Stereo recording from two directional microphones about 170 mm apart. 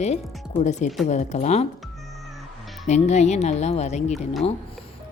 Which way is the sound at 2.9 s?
40° left (ahead or behind).